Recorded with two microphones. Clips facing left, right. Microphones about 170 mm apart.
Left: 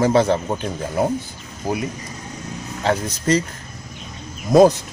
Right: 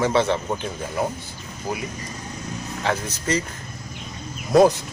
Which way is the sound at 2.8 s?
35° left (ahead or behind).